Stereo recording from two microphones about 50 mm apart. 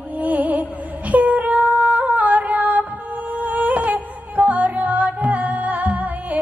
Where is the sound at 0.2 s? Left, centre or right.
Right.